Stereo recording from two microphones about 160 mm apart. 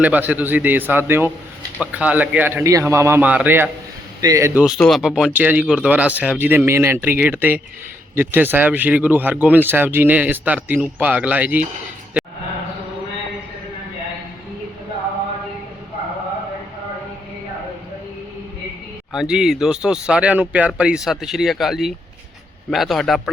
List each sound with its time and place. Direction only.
0.0 s speech: 10° right (ahead or behind)
4.8 s speech: centre (ahead or behind)
19.1 s speech: 5° right (ahead or behind)